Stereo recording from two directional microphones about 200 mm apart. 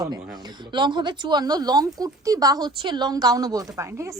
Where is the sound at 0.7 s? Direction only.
20° right (ahead or behind).